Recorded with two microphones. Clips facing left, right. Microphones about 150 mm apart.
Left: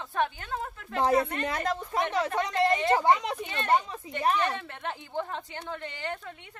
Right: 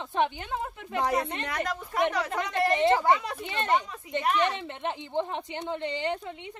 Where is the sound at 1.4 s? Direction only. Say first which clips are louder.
Left 2 dB; 25° left (ahead or behind).